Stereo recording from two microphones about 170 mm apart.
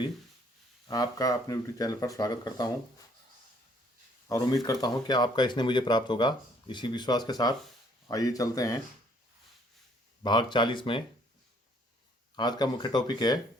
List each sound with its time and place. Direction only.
0.9 s speech: 20° left (ahead or behind)
4.6 s speech: 25° left (ahead or behind)
10.2 s speech: 25° left (ahead or behind)
12.4 s speech: 25° left (ahead or behind)